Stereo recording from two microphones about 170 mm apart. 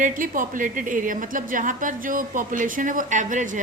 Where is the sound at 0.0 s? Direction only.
50° right (ahead or behind).